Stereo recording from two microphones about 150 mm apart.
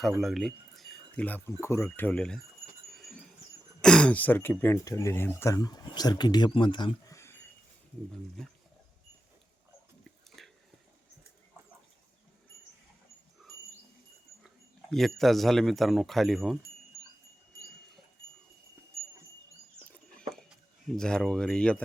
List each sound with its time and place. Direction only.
0.2 s speech: centre (ahead or behind)
2.9 s a sound: centre (ahead or behind)
3.8 s speech: 5° left (ahead or behind); by 7.2 s 30° left (ahead or behind)
7.2 s a sound: 15° left (ahead or behind)
8.4 s speech: 5° left (ahead or behind)
14.8 s speech: centre (ahead or behind)
20.9 s speech: 5° left (ahead or behind)